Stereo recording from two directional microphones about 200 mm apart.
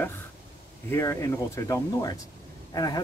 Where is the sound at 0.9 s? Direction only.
15° left (ahead or behind).